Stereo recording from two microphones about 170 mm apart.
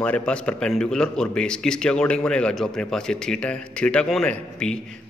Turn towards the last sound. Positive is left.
turn(degrees=5)  # may be behind; listen again after turning